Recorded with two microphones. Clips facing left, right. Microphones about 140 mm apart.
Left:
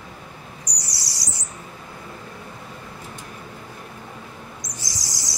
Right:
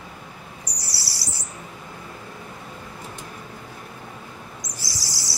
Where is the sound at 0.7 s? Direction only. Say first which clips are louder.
Even; 20° left (ahead or behind).